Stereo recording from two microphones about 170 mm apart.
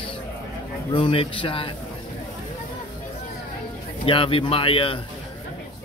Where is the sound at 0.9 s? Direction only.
35° left (ahead or behind).